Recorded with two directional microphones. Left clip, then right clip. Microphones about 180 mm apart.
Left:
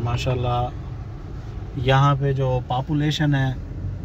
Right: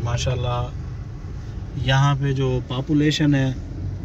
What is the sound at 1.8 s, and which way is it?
Speech, 50° left (ahead or behind).